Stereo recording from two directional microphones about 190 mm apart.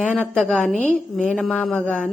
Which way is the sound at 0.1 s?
5° left (ahead or behind).